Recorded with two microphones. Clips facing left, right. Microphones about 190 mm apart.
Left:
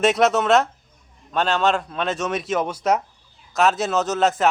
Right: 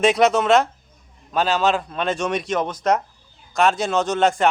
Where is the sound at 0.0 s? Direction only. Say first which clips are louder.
Right 1 dB; centre (ahead or behind).